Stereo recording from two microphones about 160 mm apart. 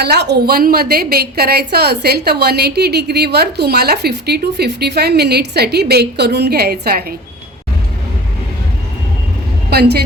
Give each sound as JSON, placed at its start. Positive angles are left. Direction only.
{"t": 0.0, "sound": "a woman's voice", "side_deg": -90}
{"t": 9.6, "sound": "a woman's voice", "side_deg": -85}